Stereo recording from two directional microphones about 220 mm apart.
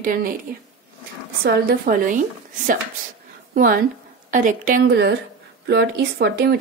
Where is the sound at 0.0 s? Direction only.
40° right (ahead or behind).